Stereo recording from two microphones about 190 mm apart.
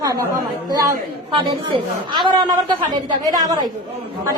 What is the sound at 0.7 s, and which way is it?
A woman's voice, 20° right (ahead or behind).